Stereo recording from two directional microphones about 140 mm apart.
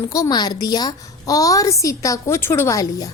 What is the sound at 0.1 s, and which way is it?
Speech, 25° left (ahead or behind).